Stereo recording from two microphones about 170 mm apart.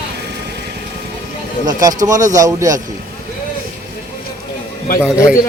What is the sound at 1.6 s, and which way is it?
A man's voice, 20° right (ahead or behind).